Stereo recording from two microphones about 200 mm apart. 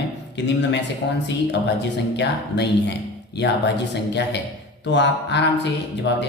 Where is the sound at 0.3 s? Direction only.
60° left (ahead or behind).